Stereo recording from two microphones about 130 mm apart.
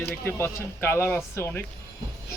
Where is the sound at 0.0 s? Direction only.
20° left (ahead or behind).